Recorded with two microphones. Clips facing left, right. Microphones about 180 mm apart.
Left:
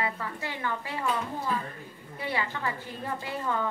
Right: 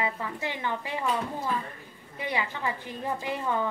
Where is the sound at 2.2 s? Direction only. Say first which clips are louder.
Right 1 dB; 15° right (ahead or behind).